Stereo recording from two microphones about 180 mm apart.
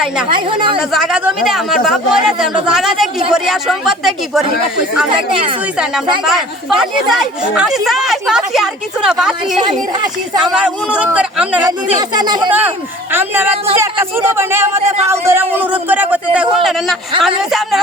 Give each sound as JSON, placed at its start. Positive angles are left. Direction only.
{"t": 0.3, "sound": "speech", "side_deg": -25}
{"t": 0.8, "sound": "speech", "side_deg": -5}
{"t": 5.7, "sound": "speech", "side_deg": -5}
{"t": 9.9, "sound": "speech", "side_deg": -25}
{"t": 10.5, "sound": "speech", "side_deg": -5}
{"t": 11.9, "sound": "speech", "side_deg": -25}
{"t": 12.5, "sound": "speech", "side_deg": -10}